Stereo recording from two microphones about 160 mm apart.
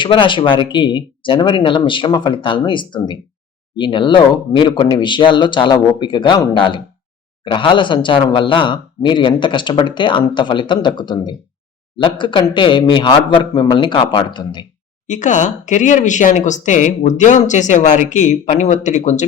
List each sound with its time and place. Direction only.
0.0 s speech: 30° left (ahead or behind)
15.0 s speech: 50° left (ahead or behind)